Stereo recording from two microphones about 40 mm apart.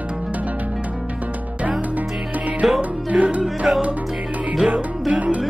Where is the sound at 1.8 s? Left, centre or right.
Right.